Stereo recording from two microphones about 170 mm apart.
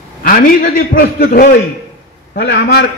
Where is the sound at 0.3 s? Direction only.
55° left (ahead or behind).